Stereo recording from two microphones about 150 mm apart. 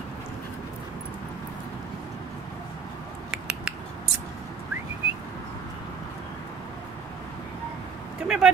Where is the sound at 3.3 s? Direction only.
5° right (ahead or behind).